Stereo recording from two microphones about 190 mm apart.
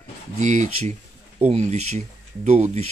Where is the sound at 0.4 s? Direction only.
40° right (ahead or behind).